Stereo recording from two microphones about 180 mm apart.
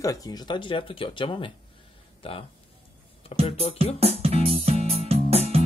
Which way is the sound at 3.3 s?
35° left (ahead or behind).